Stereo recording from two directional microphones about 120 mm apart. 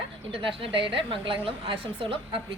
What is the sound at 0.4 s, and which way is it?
A woman's voice, 45° right (ahead or behind).